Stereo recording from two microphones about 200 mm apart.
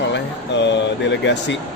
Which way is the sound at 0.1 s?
60° left (ahead or behind).